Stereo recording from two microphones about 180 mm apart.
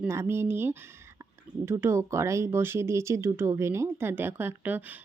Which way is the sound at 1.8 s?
15° right (ahead or behind).